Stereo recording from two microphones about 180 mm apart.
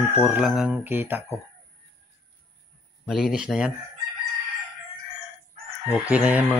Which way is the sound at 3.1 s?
5° right (ahead or behind).